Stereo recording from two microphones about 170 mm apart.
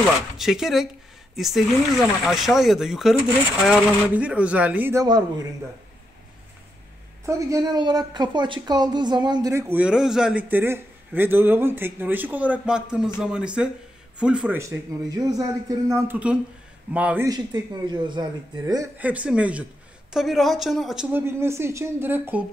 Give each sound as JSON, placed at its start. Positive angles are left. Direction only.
{"t": 0.4, "sound": "a man's voice", "side_deg": 0}
{"t": 5.0, "sound": "a woman's voice", "side_deg": -25}
{"t": 7.2, "sound": "a woman's voice", "side_deg": -20}
{"t": 9.5, "sound": "a man's voice", "side_deg": -15}
{"t": 14.6, "sound": "a woman's voice", "side_deg": -20}
{"t": 17.3, "sound": "a woman's voice", "side_deg": -25}
{"t": 18.9, "sound": "a man's voice", "side_deg": -10}